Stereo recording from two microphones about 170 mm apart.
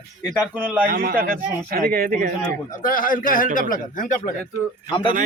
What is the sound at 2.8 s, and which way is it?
A man's voice, 55° left (ahead or behind).